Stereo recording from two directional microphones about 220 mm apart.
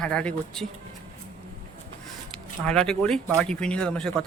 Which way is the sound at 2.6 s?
5° left (ahead or behind).